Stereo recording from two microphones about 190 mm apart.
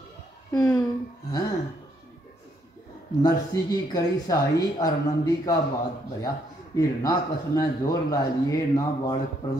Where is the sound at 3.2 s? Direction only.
20° left (ahead or behind).